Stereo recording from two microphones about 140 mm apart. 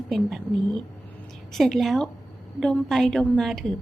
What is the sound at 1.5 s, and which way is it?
A woman's voice, centre (ahead or behind).